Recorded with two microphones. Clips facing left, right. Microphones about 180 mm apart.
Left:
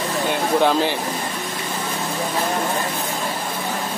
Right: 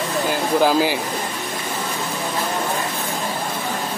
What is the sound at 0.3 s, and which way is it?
Speech, 5° right (ahead or behind).